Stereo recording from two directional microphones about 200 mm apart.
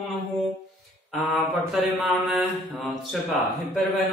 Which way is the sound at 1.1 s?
Centre (ahead or behind).